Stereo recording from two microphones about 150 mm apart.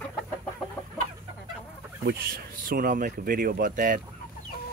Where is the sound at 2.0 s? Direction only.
80° right.